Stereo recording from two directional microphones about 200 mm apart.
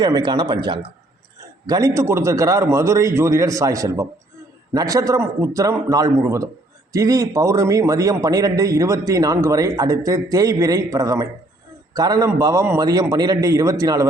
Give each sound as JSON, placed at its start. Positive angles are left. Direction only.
{"t": 0.0, "sound": "a man's voice", "side_deg": -20}